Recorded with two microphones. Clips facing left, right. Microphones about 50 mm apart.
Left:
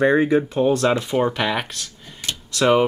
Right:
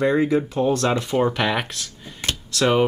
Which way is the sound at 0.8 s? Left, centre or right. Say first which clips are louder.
Left 1 dB; centre.